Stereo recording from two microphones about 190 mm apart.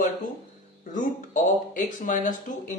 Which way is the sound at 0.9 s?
45° left (ahead or behind).